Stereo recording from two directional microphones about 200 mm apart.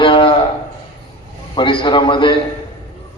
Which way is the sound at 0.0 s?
25° left (ahead or behind).